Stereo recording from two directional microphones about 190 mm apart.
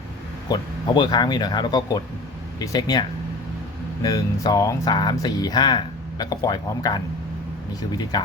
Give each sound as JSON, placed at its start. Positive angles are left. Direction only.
{"t": 0.4, "sound": "speech", "side_deg": 20}